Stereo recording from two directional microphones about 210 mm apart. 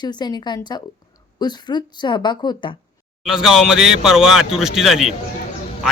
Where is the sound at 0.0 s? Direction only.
20° left (ahead or behind).